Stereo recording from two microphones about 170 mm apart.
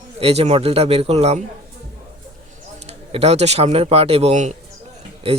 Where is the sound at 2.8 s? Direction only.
40° right (ahead or behind).